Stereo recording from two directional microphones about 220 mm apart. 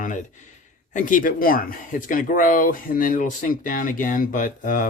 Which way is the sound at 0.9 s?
35° left (ahead or behind).